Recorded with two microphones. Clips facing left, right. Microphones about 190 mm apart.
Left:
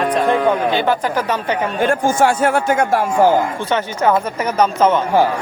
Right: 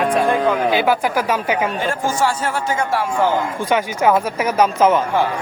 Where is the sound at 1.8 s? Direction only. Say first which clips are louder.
Left 5 dB; 55° left (ahead or behind).